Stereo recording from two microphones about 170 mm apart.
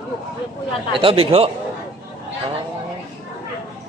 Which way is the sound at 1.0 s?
35° right (ahead or behind).